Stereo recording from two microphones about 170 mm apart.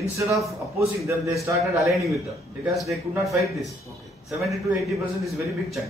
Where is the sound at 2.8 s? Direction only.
Centre (ahead or behind).